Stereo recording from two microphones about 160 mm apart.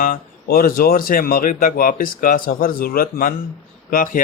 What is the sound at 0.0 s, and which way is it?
Speech, 65° left (ahead or behind).